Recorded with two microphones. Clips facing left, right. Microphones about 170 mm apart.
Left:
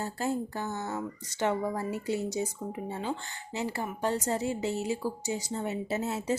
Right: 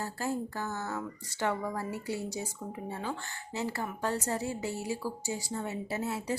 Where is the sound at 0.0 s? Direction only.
20° left (ahead or behind).